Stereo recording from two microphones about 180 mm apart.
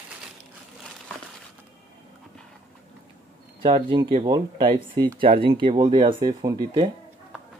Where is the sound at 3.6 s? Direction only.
25° right (ahead or behind).